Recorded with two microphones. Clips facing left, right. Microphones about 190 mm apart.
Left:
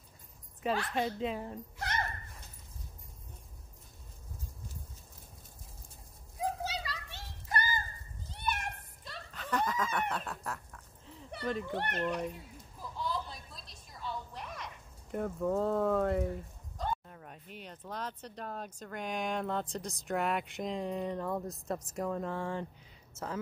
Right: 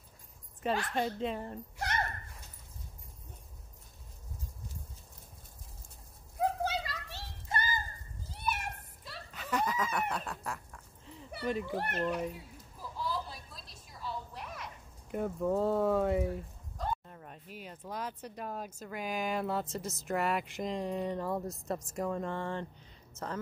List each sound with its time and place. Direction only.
0.6 s speech: centre (ahead or behind)
6.6 s children playing: 50° right (ahead or behind)
7.5 s music: 25° right (ahead or behind)
8.3 s a sound: 5° right (ahead or behind)
11.3 s a woman's voice: 5° right (ahead or behind)